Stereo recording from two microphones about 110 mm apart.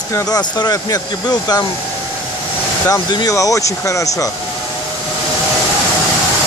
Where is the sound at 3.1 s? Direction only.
35° left (ahead or behind).